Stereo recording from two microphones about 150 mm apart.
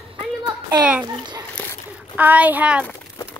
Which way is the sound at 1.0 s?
30° right (ahead or behind).